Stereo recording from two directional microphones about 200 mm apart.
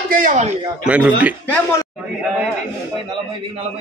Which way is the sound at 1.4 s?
10° left (ahead or behind).